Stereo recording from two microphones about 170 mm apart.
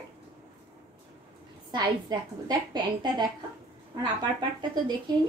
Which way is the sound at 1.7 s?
25° right (ahead or behind).